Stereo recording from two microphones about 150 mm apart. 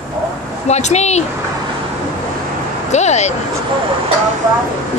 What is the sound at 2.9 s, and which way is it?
Speech, 50° left (ahead or behind).